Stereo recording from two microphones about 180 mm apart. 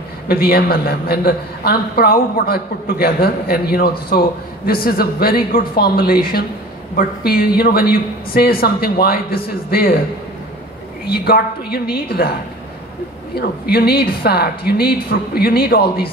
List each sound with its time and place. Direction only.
0.3 s a man's voice: 55° left (ahead or behind)
11.1 s a man's voice: 60° left (ahead or behind)